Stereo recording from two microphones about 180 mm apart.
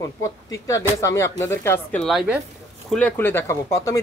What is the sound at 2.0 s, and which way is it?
A woman's voice, centre (ahead or behind).